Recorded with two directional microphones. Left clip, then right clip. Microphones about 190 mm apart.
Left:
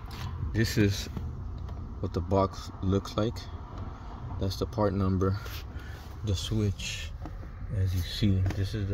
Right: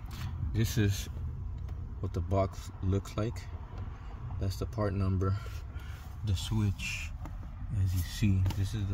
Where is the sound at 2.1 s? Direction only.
10° left (ahead or behind).